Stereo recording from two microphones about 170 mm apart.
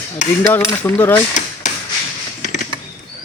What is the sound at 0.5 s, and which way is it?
Speech, 15° left (ahead or behind).